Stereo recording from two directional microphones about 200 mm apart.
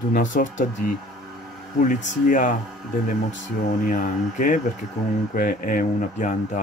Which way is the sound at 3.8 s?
40° left (ahead or behind).